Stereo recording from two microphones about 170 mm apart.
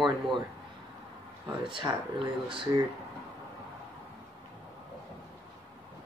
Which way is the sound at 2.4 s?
30° right (ahead or behind).